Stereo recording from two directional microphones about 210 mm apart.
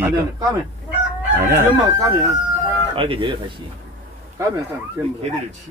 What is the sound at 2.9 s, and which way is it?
Speech, 25° right (ahead or behind).